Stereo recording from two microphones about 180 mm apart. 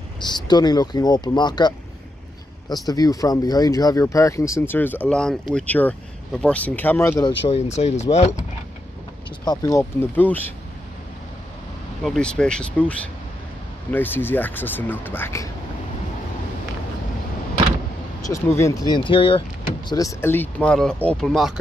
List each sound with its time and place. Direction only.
0.2 s speech: 25° left (ahead or behind)
2.9 s speech: 20° left (ahead or behind)
7.7 s speech: 40° left (ahead or behind)
9.4 s speech: 20° left (ahead or behind)
12.0 s speech: centre (ahead or behind)
18.2 s speech: 15° left (ahead or behind)